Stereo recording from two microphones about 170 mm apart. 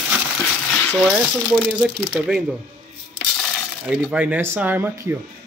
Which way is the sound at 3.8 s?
5° right (ahead or behind).